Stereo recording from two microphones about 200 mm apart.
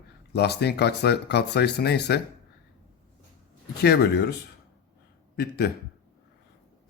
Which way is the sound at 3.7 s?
50° left (ahead or behind).